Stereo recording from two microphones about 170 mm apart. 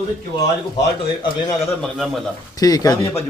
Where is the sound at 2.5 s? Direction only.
20° left (ahead or behind).